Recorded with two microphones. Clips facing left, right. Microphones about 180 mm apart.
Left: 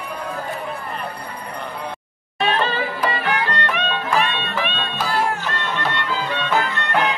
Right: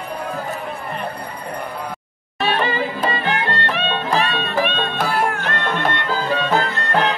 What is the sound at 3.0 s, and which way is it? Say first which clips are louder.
Music: right 1 dB; 25° right (ahead or behind).